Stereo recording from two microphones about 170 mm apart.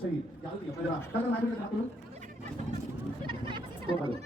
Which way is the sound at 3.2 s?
30° right (ahead or behind).